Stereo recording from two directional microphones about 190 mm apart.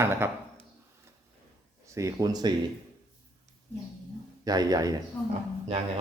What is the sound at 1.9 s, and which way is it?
Speech, 15° right (ahead or behind).